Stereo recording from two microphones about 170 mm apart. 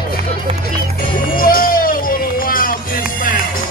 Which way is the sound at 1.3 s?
60° left (ahead or behind).